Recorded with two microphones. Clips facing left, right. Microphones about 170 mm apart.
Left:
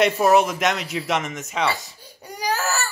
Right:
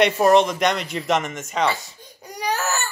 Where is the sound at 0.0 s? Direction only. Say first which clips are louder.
Right 1 dB; 5° left (ahead or behind).